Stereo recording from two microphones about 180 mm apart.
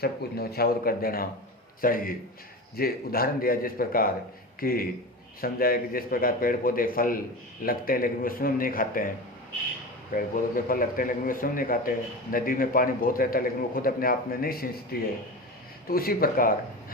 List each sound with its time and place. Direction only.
0.0 s a man's voice: 60° left (ahead or behind)
10.1 s a man's voice: 50° left (ahead or behind)